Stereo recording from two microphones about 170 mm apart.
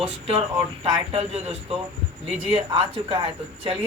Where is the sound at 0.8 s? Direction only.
35° right (ahead or behind).